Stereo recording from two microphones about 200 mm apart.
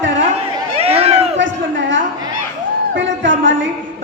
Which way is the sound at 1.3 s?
65° right (ahead or behind).